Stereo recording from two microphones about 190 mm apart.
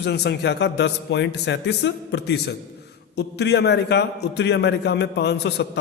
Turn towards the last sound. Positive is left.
turn(degrees=60)  # may be behind; listen again after turning